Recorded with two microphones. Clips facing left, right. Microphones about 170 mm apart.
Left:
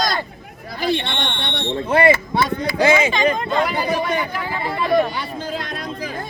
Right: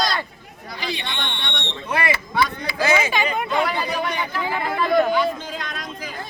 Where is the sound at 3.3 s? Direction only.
10° right (ahead or behind).